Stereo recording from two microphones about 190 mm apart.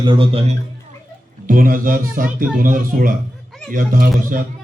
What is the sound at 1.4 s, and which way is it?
A man's voice, 45° right (ahead or behind).